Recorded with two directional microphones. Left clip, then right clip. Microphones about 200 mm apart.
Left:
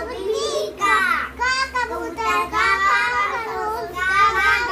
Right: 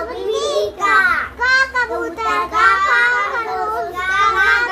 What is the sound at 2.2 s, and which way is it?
Child singing, 20° left (ahead or behind).